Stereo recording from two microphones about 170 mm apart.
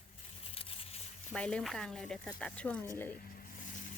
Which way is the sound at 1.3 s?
5° left (ahead or behind).